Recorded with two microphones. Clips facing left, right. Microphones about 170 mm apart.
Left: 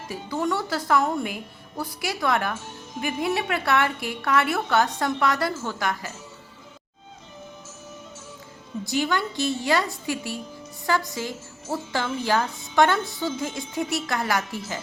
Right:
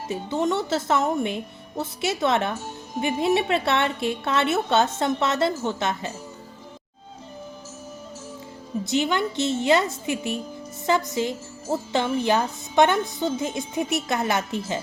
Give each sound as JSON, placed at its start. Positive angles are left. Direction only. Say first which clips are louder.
{"t": 0.1, "sound": "speech", "louder": "right 2 dB", "side_deg": -20}
{"t": 8.9, "sound": "speech", "louder": "right 2 dB", "side_deg": -20}